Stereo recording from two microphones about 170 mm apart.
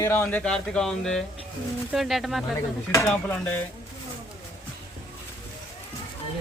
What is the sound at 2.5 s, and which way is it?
A man's voice, 15° left (ahead or behind).